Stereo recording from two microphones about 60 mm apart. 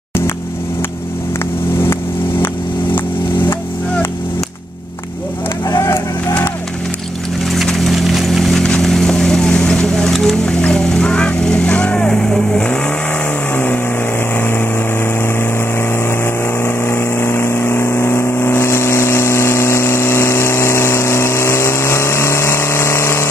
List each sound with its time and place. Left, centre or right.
5.7 s a sound: left
7.5 s clip-clop: centre
14.3 s vehicle: left
16.6 s vehicle: left